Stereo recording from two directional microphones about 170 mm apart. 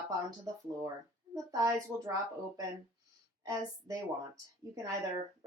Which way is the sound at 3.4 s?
20° right (ahead or behind).